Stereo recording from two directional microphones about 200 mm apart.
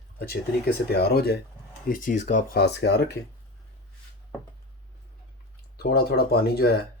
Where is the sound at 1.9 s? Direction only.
40° left (ahead or behind).